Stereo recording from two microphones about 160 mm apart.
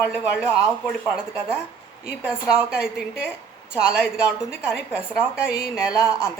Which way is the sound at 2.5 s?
5° right (ahead or behind).